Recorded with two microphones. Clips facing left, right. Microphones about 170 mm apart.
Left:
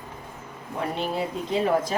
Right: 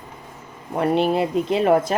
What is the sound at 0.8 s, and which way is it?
Speech, 70° right (ahead or behind).